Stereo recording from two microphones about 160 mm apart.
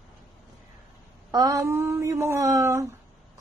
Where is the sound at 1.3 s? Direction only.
20° right (ahead or behind).